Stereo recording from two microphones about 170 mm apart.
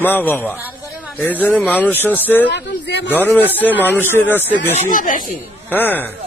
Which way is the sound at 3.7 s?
10° right (ahead or behind).